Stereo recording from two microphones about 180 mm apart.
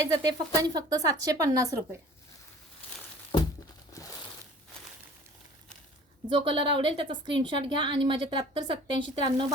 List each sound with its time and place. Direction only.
0.0 s a woman's voice: 20° right (ahead or behind)
3.3 s crumpling: 30° left (ahead or behind)
6.2 s a woman's voice: 25° right (ahead or behind)